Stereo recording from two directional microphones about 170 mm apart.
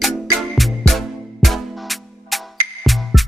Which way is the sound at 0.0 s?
Centre (ahead or behind).